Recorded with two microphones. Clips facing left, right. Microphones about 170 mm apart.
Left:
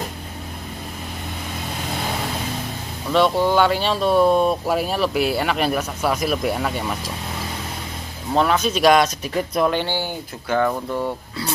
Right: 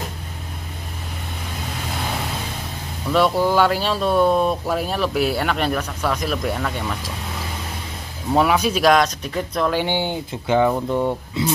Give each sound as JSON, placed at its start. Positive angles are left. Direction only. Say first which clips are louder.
{"t": 3.1, "sound": "speech", "louder": "even", "side_deg": 0}
{"t": 8.3, "sound": "speech", "louder": "right 1 dB", "side_deg": -10}
{"t": 9.8, "sound": "speech", "louder": "right 3 dB", "side_deg": -20}